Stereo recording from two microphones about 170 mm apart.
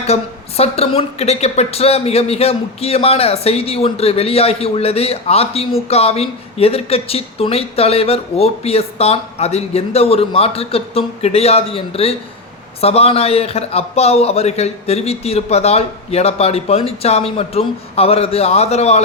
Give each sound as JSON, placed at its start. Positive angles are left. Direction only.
{"t": 0.1, "sound": "a woman's voice", "side_deg": 35}